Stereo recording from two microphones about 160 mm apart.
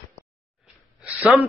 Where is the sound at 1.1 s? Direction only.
5° right (ahead or behind).